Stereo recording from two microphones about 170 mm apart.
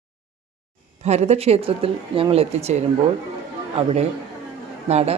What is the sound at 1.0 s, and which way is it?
Speech, 40° right (ahead or behind).